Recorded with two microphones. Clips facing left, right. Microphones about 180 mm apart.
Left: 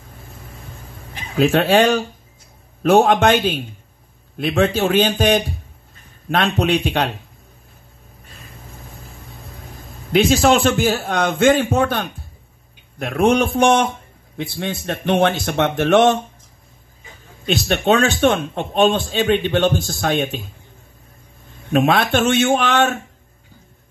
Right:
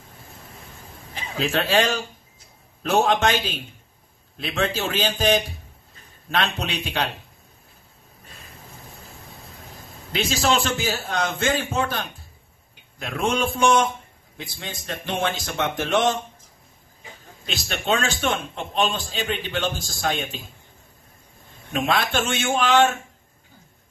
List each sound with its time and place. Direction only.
1.4 s a man's voice: 55° left (ahead or behind)
10.1 s speech: 55° left (ahead or behind)
17.6 s speech: 60° left (ahead or behind)
19.9 s speech: 55° left (ahead or behind)
21.7 s speech: 60° left (ahead or behind)